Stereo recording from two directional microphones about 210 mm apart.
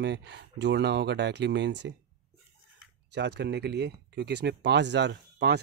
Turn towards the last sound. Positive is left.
turn(degrees=-55)  # may be behind; listen again after turning